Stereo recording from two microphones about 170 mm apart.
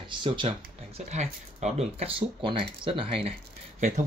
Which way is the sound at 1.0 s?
40° right (ahead or behind).